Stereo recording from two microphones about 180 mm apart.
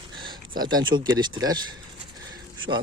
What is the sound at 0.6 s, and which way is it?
Speech, 25° right (ahead or behind).